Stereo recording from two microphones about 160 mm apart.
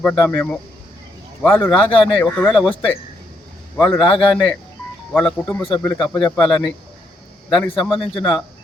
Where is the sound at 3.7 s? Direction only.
5° left (ahead or behind).